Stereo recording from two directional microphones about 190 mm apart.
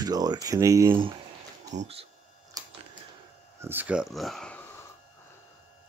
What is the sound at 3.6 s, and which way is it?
Speech, 10° right (ahead or behind).